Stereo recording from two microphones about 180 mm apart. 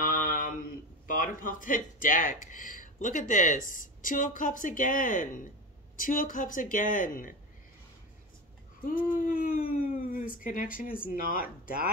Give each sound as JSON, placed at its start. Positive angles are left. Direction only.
{"t": 0.0, "sound": "mantra", "side_deg": 45}
{"t": 1.0, "sound": "speech", "side_deg": 50}
{"t": 8.8, "sound": "a sound", "side_deg": 50}
{"t": 10.4, "sound": "speech", "side_deg": 50}